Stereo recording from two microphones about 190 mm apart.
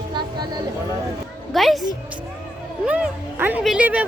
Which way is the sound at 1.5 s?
Centre (ahead or behind).